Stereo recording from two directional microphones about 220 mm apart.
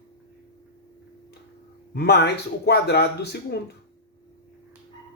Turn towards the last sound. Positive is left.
turn(degrees=45)  # may be behind; listen again after turning